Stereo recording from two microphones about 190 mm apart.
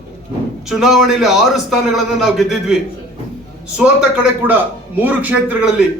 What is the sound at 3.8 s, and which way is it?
A man's voice, 5° right (ahead or behind).